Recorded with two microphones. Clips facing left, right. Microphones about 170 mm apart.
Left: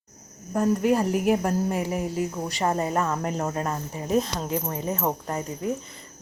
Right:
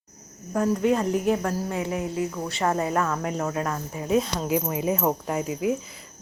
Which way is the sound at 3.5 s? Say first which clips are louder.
Right 1 dB; 25° left (ahead or behind).